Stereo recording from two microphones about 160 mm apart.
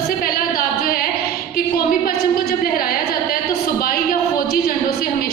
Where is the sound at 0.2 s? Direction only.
65° left (ahead or behind).